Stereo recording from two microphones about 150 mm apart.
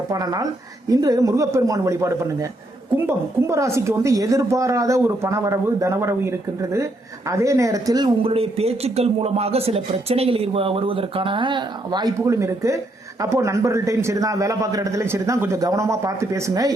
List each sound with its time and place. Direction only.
0.1 s speech: 25° right (ahead or behind)